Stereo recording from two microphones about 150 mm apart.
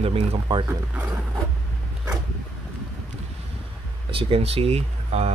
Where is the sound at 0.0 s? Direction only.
40° right (ahead or behind).